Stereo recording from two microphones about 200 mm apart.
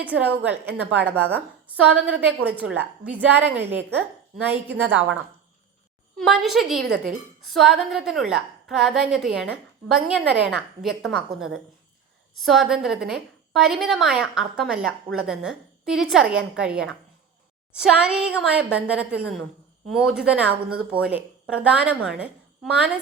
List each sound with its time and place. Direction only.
0.0 s a woman's voice: 5° right (ahead or behind)
0.7 s a woman's voice: 60° right (ahead or behind)
1.0 s a woman's voice: 10° right (ahead or behind)
4.4 s a woman's voice: 10° right (ahead or behind)
6.1 s a woman's voice: centre (ahead or behind)